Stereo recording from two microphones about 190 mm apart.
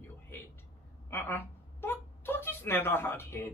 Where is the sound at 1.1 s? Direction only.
10° left (ahead or behind).